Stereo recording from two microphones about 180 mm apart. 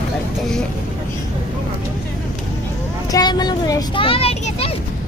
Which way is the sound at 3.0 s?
20° left (ahead or behind).